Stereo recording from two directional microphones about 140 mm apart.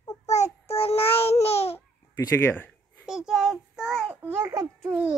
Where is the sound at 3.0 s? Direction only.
5° right (ahead or behind).